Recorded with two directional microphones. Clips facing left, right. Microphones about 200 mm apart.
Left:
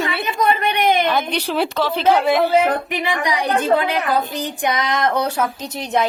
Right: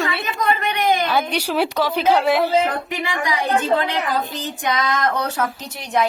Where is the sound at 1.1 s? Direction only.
10° right (ahead or behind).